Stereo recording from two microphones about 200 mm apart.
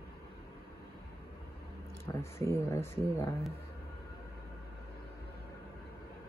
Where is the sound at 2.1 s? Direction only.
15° left (ahead or behind).